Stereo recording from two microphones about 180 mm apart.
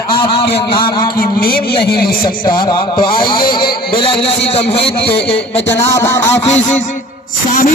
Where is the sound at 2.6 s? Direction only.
25° left (ahead or behind).